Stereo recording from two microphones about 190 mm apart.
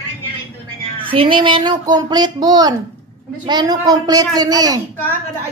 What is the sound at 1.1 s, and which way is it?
Speech, 25° right (ahead or behind).